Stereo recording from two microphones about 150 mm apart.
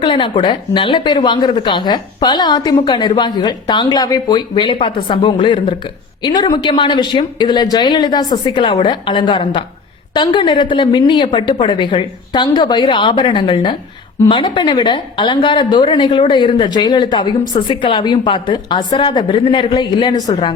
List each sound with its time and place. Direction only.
0.0 s a woman's voice: 35° left (ahead or behind)